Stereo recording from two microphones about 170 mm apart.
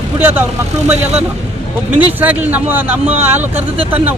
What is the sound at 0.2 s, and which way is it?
Speech, 10° right (ahead or behind).